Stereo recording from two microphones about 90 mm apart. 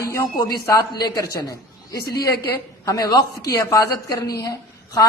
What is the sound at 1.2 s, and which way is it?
A man's voice, 40° left (ahead or behind).